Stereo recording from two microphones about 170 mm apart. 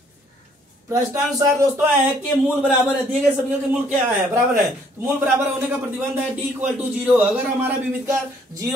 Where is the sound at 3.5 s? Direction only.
10° right (ahead or behind).